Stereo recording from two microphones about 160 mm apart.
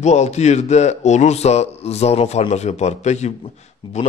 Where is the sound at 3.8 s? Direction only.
30° left (ahead or behind).